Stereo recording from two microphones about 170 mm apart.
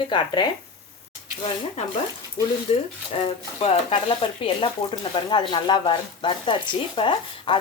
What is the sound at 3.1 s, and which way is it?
Speech, 35° left (ahead or behind).